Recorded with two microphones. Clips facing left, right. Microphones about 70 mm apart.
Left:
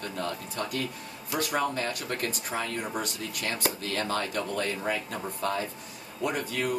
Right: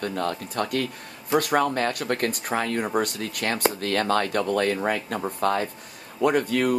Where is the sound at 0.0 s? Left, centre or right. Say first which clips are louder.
Right 6 dB; right.